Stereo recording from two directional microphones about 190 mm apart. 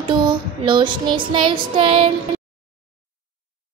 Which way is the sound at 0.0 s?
25° right (ahead or behind).